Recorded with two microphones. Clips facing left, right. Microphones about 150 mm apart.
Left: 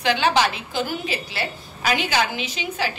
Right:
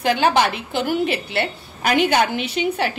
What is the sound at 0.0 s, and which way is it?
A woman's voice, 50° right (ahead or behind).